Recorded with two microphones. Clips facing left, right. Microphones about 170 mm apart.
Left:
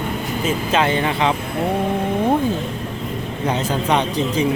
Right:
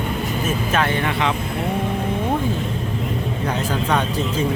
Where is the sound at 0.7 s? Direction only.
20° left (ahead or behind).